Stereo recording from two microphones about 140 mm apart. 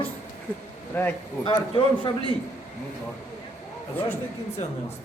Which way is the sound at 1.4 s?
40° left (ahead or behind).